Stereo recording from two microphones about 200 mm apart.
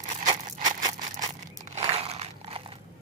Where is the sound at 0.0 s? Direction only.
40° right (ahead or behind).